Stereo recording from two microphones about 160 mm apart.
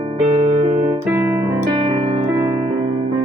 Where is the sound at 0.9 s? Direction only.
15° right (ahead or behind).